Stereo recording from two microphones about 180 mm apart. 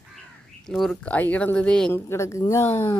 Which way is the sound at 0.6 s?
Centre (ahead or behind).